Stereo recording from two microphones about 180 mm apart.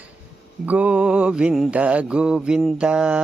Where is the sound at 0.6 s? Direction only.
10° right (ahead or behind).